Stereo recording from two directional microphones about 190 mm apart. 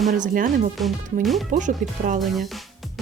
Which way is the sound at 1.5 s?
40° right (ahead or behind).